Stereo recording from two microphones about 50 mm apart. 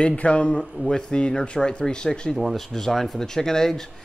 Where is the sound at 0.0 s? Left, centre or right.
Left.